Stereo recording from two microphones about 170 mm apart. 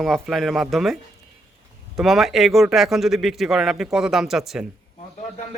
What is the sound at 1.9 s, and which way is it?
Speech, centre (ahead or behind).